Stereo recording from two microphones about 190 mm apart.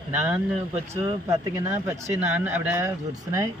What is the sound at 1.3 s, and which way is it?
Speech, 15° right (ahead or behind).